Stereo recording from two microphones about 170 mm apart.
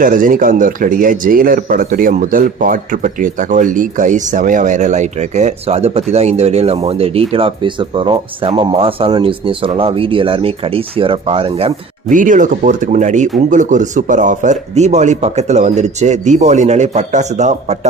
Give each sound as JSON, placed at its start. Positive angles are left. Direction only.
{"t": 0.0, "sound": "speech", "side_deg": -55}
{"t": 12.1, "sound": "a man's voice", "side_deg": -50}